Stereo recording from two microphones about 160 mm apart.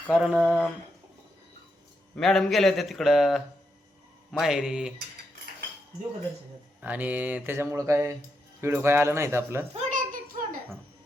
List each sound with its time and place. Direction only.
0.1 s a man's voice: 5° right (ahead or behind)
2.1 s a man's voice: centre (ahead or behind)
6.8 s speech: 10° right (ahead or behind)
9.9 s a sound: 55° right (ahead or behind)